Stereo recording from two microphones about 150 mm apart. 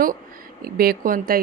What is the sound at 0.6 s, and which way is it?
Speech, 80° right.